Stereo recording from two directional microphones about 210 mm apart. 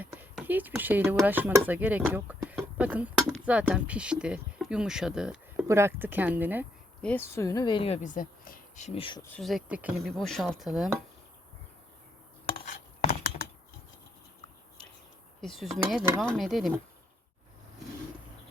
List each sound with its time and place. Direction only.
0.0 s speech: 10° right (ahead or behind)
7.0 s speech: 10° left (ahead or behind)
8.0 s speech: 40° left (ahead or behind)
9.2 s speech: 5° left (ahead or behind)
15.4 s speech: centre (ahead or behind)